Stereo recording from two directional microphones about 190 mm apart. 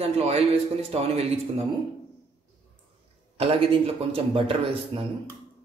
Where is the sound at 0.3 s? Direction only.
35° right (ahead or behind).